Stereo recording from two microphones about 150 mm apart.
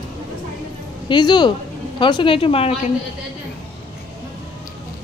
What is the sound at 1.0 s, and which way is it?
Speech, 30° left (ahead or behind).